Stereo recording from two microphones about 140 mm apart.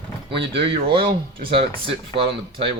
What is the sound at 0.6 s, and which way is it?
Speech, 40° right (ahead or behind).